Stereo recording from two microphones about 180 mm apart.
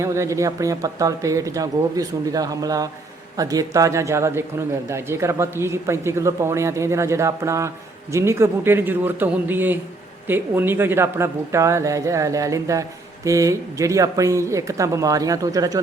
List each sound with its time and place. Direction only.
0.0 s a man's voice: 15° right (ahead or behind)